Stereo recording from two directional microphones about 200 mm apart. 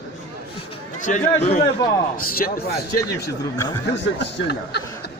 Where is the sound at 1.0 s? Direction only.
35° left (ahead or behind).